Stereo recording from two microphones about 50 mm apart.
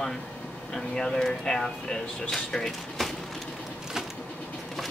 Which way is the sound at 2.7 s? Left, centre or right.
Centre.